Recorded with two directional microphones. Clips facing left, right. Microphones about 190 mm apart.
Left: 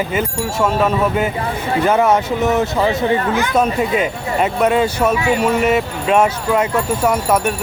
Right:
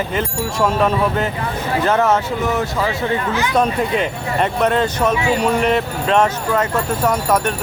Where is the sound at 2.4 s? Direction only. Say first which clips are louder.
Left 4 dB; 20° left (ahead or behind).